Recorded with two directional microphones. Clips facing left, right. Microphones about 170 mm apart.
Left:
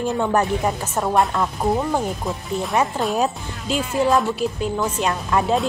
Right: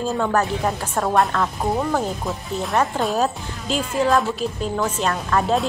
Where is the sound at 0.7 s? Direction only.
Centre (ahead or behind).